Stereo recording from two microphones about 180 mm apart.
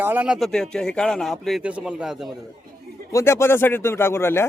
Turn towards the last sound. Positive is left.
turn(degrees=15)  # may be behind; listen again after turning